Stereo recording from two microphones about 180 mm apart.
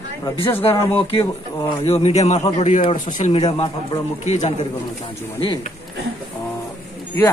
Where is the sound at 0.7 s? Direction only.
15° left (ahead or behind).